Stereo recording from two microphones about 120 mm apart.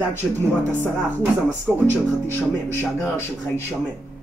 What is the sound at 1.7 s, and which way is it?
Speech, 10° right (ahead or behind).